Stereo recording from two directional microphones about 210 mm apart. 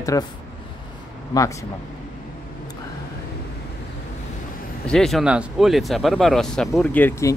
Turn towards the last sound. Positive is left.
turn(degrees=10)  # may be behind; listen again after turning